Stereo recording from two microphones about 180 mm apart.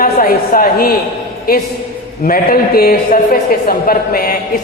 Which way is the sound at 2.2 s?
55° left (ahead or behind).